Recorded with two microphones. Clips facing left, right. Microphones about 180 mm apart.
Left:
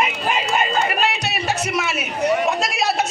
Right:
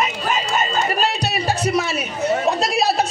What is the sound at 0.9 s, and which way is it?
Music, 35° right (ahead or behind).